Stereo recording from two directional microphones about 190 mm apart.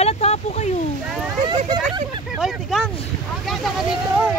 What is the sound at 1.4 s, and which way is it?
Speech, 25° right (ahead or behind).